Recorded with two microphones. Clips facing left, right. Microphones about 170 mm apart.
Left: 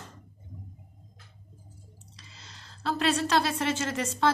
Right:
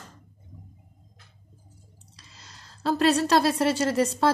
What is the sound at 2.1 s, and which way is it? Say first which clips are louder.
Speech: right 2 dB; 40° right (ahead or behind).